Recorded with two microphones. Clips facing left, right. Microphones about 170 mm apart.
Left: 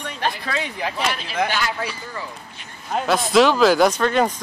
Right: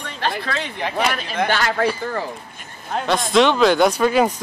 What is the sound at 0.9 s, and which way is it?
Speech, 55° right (ahead or behind).